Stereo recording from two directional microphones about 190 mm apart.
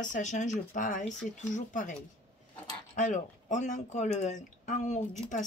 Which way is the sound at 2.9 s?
40° left (ahead or behind).